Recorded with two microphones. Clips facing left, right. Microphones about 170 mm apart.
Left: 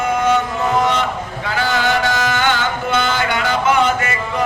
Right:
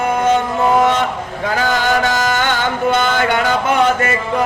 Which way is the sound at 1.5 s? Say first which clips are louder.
Right 2 dB; 45° right (ahead or behind).